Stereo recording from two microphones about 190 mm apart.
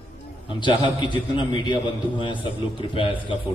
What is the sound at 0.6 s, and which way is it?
A man's voice, 25° left (ahead or behind).